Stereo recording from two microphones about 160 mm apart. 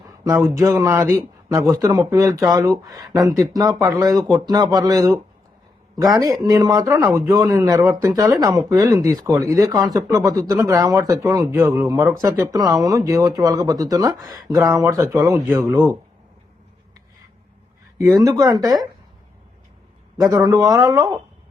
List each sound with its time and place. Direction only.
0.5 s speech: 20° right (ahead or behind)
17.9 s speech: 20° right (ahead or behind)
20.1 s speech: 20° right (ahead or behind)